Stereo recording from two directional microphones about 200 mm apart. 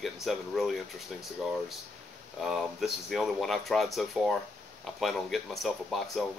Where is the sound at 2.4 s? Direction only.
Centre (ahead or behind).